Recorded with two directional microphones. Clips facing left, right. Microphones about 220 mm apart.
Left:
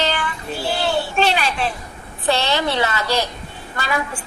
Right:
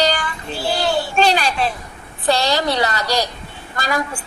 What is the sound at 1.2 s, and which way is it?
A woman's voice, 40° right (ahead or behind).